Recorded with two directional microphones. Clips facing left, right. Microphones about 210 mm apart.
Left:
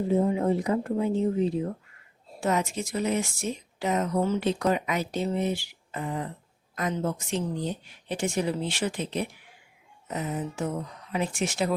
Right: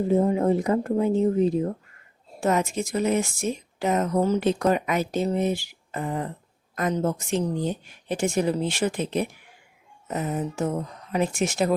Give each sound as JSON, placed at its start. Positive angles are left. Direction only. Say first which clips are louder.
{"t": 0.1, "sound": "speech", "louder": "right 3 dB", "side_deg": -45}